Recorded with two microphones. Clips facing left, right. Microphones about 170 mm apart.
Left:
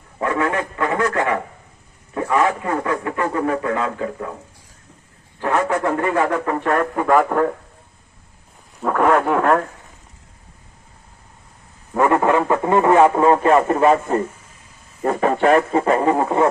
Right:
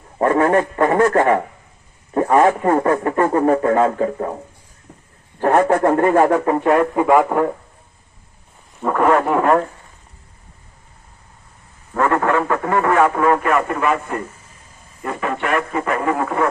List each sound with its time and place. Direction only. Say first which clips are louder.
0.2 s a man's voice: right 6 dB; 45° right (ahead or behind)
5.4 s a man's voice: right 5 dB; 50° right (ahead or behind)
6.4 s speech: right 4 dB; 30° right (ahead or behind)
6.7 s a man's voice: right 3 dB; 15° right (ahead or behind)
8.8 s speech: right 1 dB; centre (ahead or behind)
11.9 s speech: left 1 dB; 15° left (ahead or behind)